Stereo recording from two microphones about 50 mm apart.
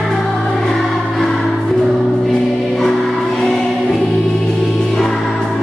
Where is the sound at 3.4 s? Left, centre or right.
Centre.